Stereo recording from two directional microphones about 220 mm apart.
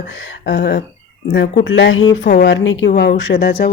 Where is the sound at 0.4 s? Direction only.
45° left (ahead or behind).